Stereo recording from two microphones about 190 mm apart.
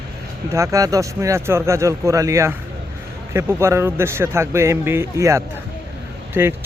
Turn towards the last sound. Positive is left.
turn(degrees=-10)  # may be behind; listen again after turning